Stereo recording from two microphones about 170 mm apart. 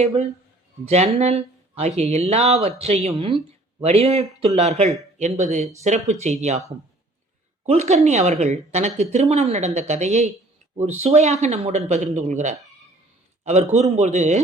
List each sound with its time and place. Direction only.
0.0 s speech: 40° right (ahead or behind)
7.6 s a man's voice: 40° right (ahead or behind)